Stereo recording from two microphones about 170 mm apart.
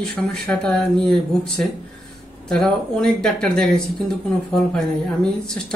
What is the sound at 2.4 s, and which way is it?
Speech, 5° left (ahead or behind).